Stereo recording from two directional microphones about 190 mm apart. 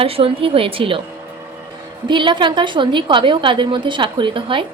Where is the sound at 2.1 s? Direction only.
25° right (ahead or behind).